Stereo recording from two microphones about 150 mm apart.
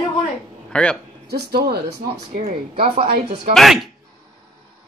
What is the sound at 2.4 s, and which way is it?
Speech, 40° right (ahead or behind).